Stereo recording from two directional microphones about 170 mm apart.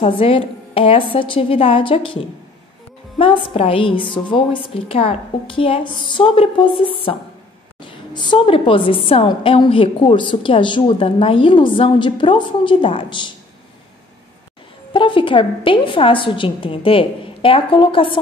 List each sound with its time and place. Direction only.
0.0 s a woman's voice: 35° left (ahead or behind)
14.9 s a woman's voice: 30° left (ahead or behind)